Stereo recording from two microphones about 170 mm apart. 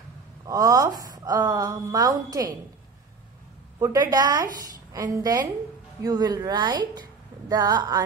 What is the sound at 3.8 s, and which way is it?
Speech, 20° right (ahead or behind).